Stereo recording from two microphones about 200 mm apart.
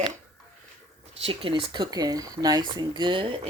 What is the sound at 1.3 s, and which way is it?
Speech, 25° right (ahead or behind).